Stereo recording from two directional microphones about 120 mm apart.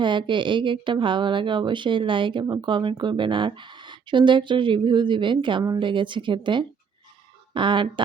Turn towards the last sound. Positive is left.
turn(degrees=-40)  # may be behind; listen again after turning